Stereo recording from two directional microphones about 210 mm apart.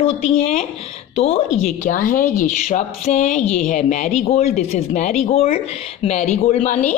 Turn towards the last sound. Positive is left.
turn(degrees=35)  # may be behind; listen again after turning